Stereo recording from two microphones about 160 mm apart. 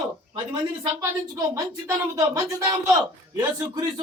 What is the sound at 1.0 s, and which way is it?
A man's voice, 20° right (ahead or behind).